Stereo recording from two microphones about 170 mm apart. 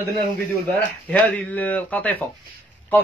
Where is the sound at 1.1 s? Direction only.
10° left (ahead or behind).